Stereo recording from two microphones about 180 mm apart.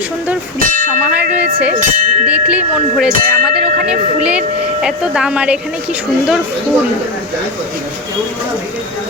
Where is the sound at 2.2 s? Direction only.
5° right (ahead or behind).